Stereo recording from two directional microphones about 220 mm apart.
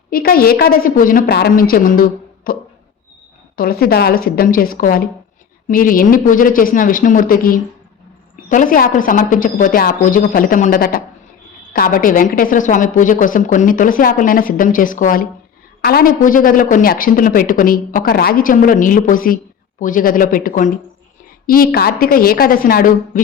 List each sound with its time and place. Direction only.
0.1 s a woman's voice: 40° left (ahead or behind)